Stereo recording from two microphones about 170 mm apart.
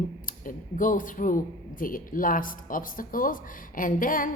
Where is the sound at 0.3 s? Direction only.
55° left (ahead or behind).